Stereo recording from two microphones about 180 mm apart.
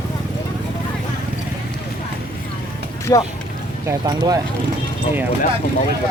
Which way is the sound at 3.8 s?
20° right (ahead or behind).